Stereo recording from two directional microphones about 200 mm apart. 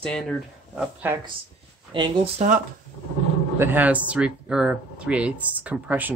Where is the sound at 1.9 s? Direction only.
25° right (ahead or behind).